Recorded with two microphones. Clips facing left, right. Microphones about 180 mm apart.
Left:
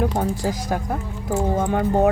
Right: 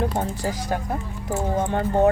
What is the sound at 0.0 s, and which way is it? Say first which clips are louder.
Speech: left 3 dB; 15° left (ahead or behind).